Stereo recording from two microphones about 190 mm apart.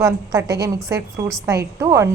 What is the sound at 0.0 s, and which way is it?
A woman's voice, 15° right (ahead or behind).